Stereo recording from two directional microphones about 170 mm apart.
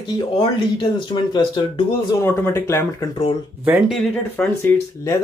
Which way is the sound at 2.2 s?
15° left (ahead or behind).